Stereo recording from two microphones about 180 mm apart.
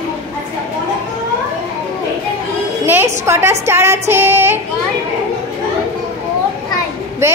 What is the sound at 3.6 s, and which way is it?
Child singing, 15° right (ahead or behind).